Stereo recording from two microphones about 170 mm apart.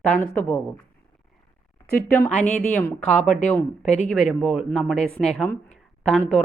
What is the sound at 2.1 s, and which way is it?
Speech, 10° left (ahead or behind).